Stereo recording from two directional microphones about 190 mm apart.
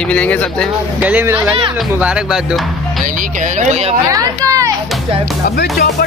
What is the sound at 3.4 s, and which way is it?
Speech, 40° right (ahead or behind).